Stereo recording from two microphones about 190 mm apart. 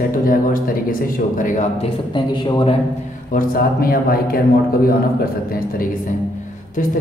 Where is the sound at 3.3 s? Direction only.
50° left (ahead or behind).